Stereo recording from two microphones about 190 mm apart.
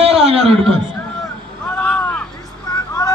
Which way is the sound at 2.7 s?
20° left (ahead or behind).